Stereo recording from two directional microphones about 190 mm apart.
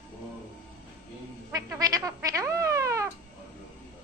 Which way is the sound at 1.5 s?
20° right (ahead or behind).